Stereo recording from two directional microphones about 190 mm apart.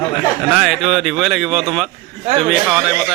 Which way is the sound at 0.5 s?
Centre (ahead or behind).